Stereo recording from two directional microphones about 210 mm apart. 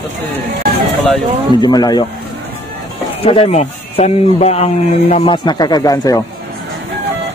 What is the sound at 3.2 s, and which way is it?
Speech, 30° left (ahead or behind).